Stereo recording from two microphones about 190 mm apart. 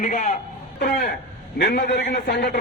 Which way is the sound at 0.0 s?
45° left (ahead or behind).